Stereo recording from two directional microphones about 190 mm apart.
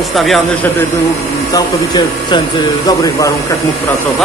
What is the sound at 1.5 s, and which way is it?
Speech, 20° left (ahead or behind).